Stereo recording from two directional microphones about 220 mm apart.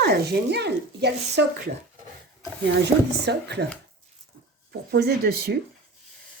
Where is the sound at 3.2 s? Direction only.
50° right (ahead or behind).